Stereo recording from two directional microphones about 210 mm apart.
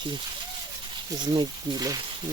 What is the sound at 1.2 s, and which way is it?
Speech, 20° right (ahead or behind).